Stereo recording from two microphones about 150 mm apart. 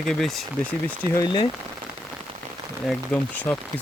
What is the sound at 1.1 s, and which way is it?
Speech, 25° left (ahead or behind).